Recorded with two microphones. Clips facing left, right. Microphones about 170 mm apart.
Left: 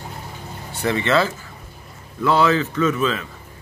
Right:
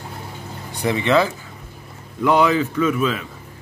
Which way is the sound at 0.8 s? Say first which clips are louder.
Right 1 dB; 15° right (ahead or behind).